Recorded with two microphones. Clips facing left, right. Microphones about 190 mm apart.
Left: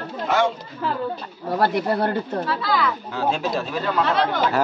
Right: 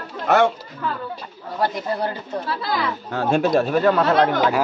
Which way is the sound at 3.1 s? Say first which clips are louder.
Right 9 dB; 55° right (ahead or behind).